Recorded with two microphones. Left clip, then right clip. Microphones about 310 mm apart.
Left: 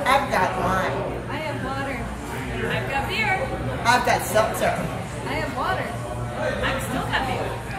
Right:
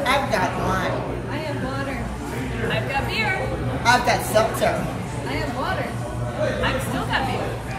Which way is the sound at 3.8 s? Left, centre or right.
Centre.